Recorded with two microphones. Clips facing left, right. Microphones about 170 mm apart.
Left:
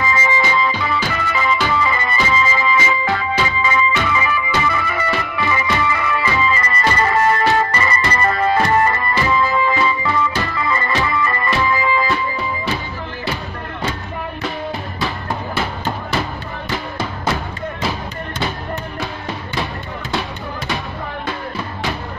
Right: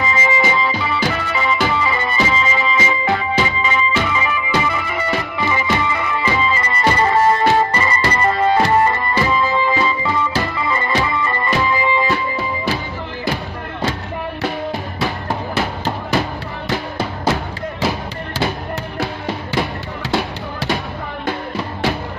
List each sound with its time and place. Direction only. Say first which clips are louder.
0.0 s music: right 1 dB; 20° right (ahead or behind)